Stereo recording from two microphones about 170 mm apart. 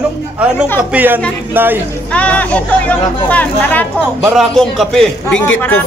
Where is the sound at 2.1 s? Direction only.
5° left (ahead or behind).